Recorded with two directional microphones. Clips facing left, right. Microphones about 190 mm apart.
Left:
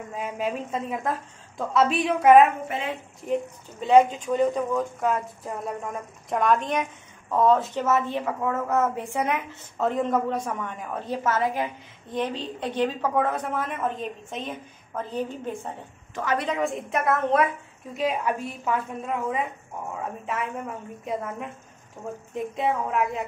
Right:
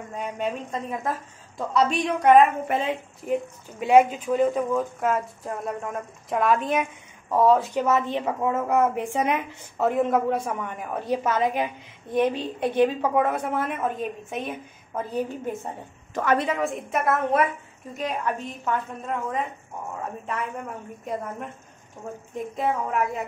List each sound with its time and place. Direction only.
0.1 s speech: centre (ahead or behind)
3.8 s a woman's voice: 10° right (ahead or behind)